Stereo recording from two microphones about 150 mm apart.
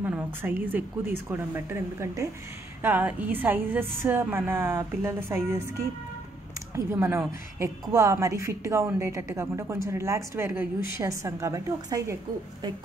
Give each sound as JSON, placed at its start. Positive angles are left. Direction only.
{"t": 0.0, "sound": "a woman's voice", "side_deg": -10}
{"t": 6.7, "sound": "a woman's voice", "side_deg": -15}